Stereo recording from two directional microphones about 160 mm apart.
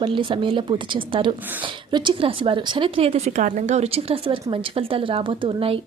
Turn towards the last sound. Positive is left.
turn(degrees=-35)  # may be behind; listen again after turning